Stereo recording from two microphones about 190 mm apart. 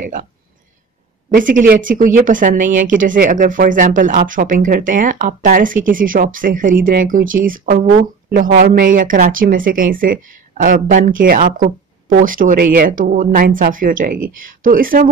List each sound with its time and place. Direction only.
0.0 s speech: 45° right (ahead or behind)
1.3 s speech: 45° right (ahead or behind)